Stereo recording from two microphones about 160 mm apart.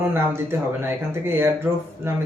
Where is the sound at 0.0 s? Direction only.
15° right (ahead or behind).